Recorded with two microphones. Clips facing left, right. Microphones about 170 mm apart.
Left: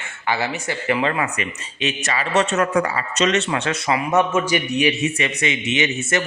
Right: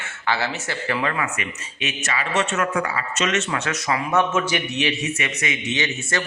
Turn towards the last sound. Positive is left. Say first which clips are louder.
# left 4 dB
turn(degrees=20)  # may be behind; listen again after turning